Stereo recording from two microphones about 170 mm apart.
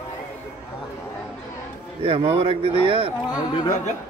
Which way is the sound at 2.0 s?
30° right (ahead or behind).